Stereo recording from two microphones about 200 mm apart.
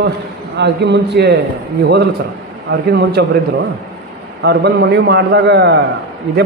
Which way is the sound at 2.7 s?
55° right (ahead or behind).